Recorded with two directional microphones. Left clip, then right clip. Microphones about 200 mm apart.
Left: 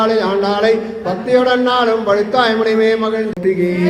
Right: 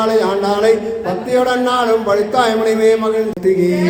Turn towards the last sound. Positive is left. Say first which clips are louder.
# right 1 dB
turn(degrees=-5)  # may be behind; listen again after turning